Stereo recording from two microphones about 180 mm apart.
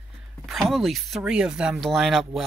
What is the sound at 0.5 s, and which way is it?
Speech, centre (ahead or behind).